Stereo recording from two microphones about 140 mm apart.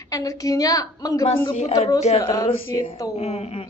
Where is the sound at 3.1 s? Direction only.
50° left (ahead or behind).